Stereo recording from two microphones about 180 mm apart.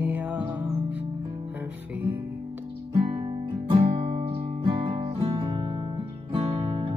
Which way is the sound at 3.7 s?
30° right (ahead or behind).